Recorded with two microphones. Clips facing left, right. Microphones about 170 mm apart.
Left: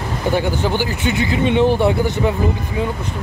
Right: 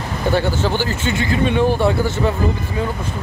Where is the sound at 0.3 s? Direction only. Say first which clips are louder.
Even; 15° left (ahead or behind).